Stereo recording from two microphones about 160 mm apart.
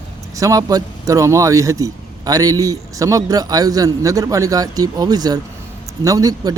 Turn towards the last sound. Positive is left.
turn(degrees=-20)  # may be behind; listen again after turning